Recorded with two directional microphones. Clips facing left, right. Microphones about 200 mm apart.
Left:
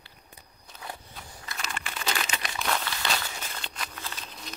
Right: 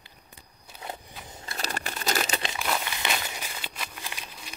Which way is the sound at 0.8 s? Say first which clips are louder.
Right 2 dB; 25° right (ahead or behind).